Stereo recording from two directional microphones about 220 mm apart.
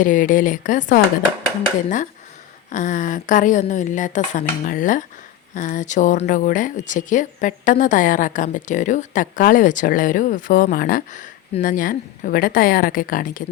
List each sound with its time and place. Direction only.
0.0 s speech: 35° left (ahead or behind)
2.6 s speech: 35° left (ahead or behind)